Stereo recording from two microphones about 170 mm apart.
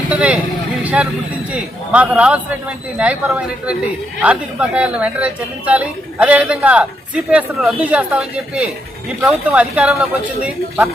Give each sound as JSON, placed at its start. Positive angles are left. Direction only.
{"t": 0.1, "sound": "a woman's voice", "side_deg": -5}